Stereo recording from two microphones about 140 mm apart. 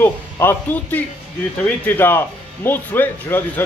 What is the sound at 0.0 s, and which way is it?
Speech, 15° left (ahead or behind).